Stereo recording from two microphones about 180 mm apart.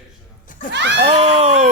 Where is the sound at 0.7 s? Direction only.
75° right (ahead or behind).